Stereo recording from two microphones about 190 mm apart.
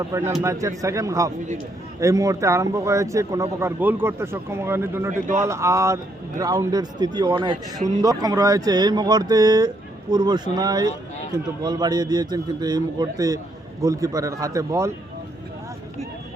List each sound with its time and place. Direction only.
0.0 s a man's voice: 15° right (ahead or behind)